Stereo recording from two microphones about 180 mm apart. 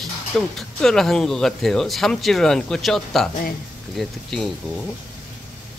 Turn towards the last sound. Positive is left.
turn(degrees=0)  # may be behind; listen again after turning